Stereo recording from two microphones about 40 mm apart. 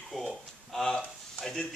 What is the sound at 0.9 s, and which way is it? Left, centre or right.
Speech, centre.